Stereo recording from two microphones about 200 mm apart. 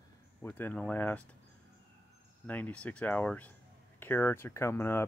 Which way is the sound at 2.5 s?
5° left (ahead or behind).